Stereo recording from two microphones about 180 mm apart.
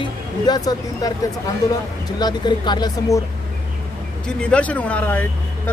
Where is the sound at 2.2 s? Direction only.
25° left (ahead or behind).